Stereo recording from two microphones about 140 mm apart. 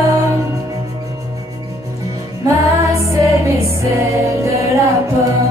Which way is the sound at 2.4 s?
20° right (ahead or behind).